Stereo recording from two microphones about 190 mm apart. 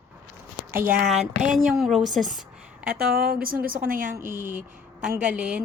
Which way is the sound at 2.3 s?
5° right (ahead or behind).